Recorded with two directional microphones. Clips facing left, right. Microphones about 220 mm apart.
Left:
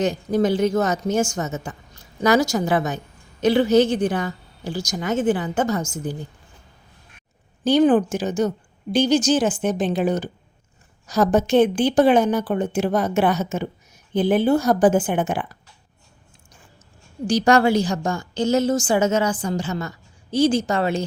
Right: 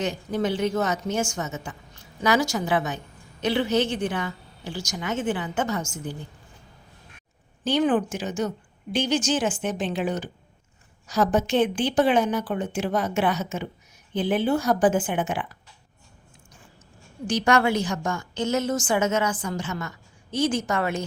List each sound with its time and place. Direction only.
0.0 s a woman's voice: 40° left (ahead or behind)
7.6 s a woman's voice: 40° left (ahead or behind)
17.2 s a woman's voice: 35° left (ahead or behind)